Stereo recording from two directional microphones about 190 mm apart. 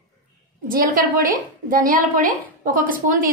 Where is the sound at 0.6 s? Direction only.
45° right (ahead or behind).